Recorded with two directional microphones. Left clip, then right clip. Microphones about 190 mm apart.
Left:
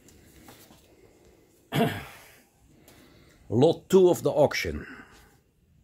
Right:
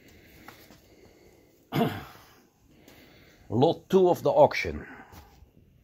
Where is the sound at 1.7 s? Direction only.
25° left (ahead or behind).